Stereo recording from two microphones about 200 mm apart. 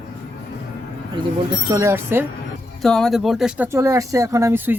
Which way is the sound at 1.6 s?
15° right (ahead or behind).